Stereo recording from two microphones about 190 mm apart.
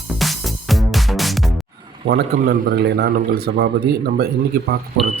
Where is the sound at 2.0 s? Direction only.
55° right (ahead or behind).